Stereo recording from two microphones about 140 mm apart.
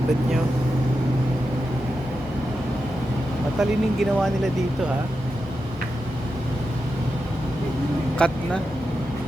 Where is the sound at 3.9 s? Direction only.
Centre (ahead or behind).